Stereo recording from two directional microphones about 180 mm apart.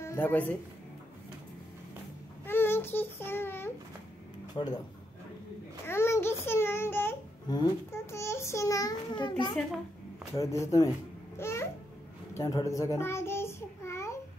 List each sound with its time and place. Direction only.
0.0 s speech: 15° left (ahead or behind)
2.4 s a sound: 10° left (ahead or behind)
4.6 s speech: 20° left (ahead or behind)
5.9 s a sound: 15° left (ahead or behind)
7.4 s a child's voice: 25° left (ahead or behind)
11.3 s babbling: 15° left (ahead or behind)
12.4 s child singing: 15° left (ahead or behind)